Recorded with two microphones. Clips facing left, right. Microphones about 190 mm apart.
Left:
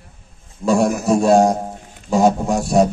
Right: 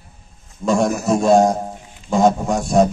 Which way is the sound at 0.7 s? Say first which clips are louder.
Left 1 dB; centre (ahead or behind).